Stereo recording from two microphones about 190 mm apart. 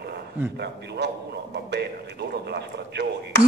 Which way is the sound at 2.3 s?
60° right (ahead or behind).